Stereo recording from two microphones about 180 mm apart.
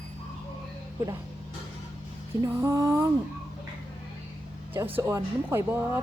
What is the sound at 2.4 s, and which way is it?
Music, 15° right (ahead or behind).